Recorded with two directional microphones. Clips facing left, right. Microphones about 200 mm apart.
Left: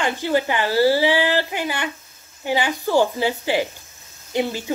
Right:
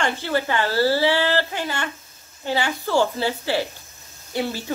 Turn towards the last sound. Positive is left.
turn(degrees=15)  # may be behind; listen again after turning